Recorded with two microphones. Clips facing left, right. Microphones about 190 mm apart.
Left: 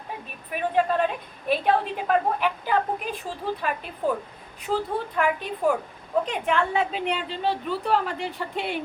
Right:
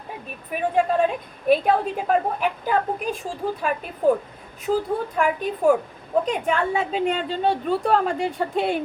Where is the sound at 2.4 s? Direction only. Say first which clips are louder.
Right 2 dB; 45° right (ahead or behind).